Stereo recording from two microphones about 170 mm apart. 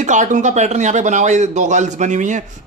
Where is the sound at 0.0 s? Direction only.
45° right (ahead or behind).